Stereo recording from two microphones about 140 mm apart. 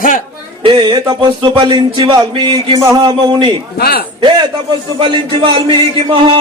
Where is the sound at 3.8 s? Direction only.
90° left.